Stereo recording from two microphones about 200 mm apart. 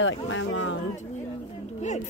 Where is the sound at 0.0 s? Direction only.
80° left.